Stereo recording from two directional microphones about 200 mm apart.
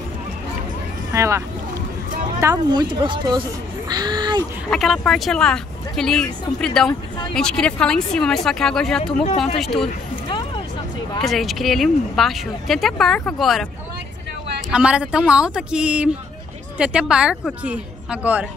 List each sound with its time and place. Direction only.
1.1 s speech: 15° right (ahead or behind)
2.4 s a woman's voice: 20° right (ahead or behind)
3.9 s a sound: 20° right (ahead or behind)
4.6 s speech: centre (ahead or behind)
6.9 s speech: 20° left (ahead or behind)
7.3 s speech: 5° left (ahead or behind)
10.2 s music: 25° left (ahead or behind)
11.2 s speech: centre (ahead or behind)
14.7 s speech: 5° right (ahead or behind)